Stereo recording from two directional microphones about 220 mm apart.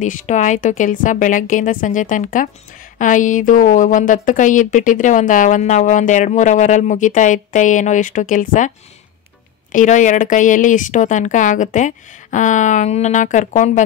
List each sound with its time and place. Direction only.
0.0 s a woman's voice: 35° left (ahead or behind)